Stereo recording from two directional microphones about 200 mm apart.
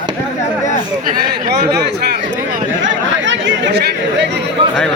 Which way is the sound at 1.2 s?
55° right (ahead or behind).